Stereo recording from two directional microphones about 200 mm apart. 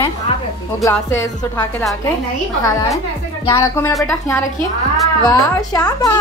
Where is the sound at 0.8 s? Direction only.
15° left (ahead or behind).